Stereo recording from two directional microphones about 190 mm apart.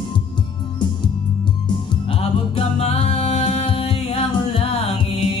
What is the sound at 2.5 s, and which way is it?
Music, 35° left (ahead or behind).